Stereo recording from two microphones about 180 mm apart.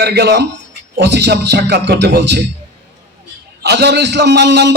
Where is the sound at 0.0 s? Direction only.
65° right (ahead or behind).